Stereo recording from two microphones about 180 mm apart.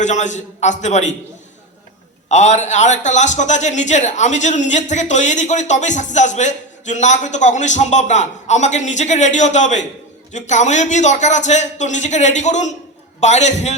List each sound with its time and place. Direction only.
0.0 s a man's voice: 40° left (ahead or behind)
2.3 s a man's voice: 40° left (ahead or behind)